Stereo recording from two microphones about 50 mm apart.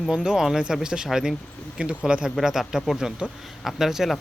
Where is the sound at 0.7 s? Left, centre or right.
Centre.